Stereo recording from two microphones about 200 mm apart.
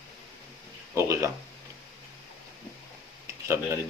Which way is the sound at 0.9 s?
15° right (ahead or behind).